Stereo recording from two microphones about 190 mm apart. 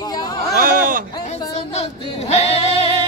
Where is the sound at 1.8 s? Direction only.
35° left (ahead or behind).